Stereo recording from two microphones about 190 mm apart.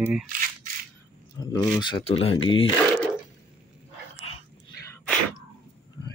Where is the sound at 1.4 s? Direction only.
20° left (ahead or behind).